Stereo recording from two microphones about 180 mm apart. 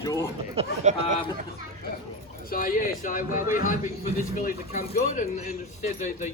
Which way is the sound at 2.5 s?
50° left (ahead or behind).